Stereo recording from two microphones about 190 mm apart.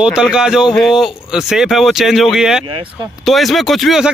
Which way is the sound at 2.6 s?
25° right (ahead or behind).